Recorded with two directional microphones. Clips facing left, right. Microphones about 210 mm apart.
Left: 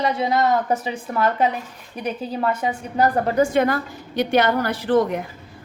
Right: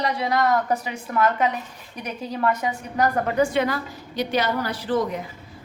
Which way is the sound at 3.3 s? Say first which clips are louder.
Left 3 dB; 45° left (ahead or behind).